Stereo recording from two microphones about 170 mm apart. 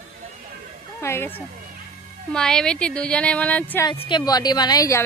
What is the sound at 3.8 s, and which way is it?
A woman's voice, 30° left (ahead or behind).